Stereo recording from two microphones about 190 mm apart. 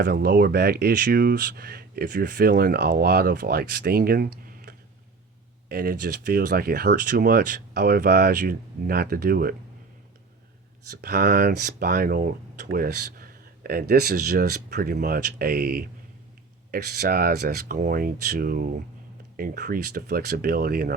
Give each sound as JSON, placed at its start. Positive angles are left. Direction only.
{"t": 0.0, "sound": "speech", "side_deg": -50}
{"t": 11.0, "sound": "speech", "side_deg": -55}